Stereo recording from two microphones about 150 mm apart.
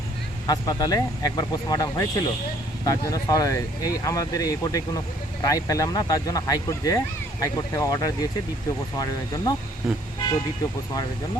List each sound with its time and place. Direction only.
0.4 s speech: 25° left (ahead or behind)